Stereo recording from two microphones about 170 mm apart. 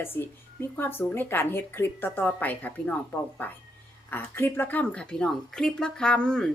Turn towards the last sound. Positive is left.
turn(degrees=5)  # may be behind; listen again after turning